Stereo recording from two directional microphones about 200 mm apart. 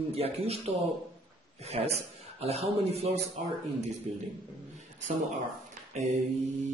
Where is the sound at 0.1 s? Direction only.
30° right (ahead or behind).